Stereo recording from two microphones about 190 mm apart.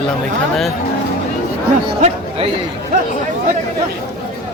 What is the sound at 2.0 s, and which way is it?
Speech, 35° right (ahead or behind).